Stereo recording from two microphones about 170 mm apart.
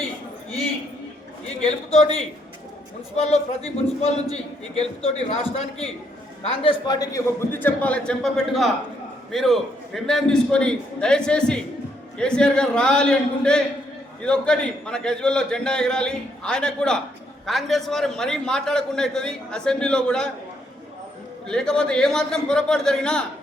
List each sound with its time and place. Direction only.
1.6 s a man's voice: 40° left (ahead or behind); by 20.3 s 5° left (ahead or behind)
21.4 s a man's voice: 5° left (ahead or behind)